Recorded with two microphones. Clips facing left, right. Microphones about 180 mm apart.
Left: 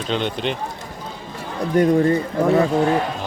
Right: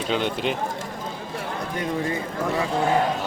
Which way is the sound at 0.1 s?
5° right (ahead or behind).